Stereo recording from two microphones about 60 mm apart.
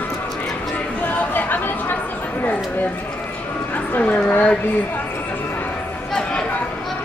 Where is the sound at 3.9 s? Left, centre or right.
Left.